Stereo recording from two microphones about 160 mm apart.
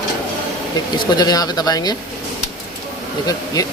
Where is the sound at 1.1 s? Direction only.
25° left (ahead or behind).